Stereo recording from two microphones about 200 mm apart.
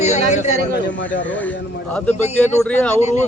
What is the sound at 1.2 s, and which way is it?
Speech, 5° left (ahead or behind).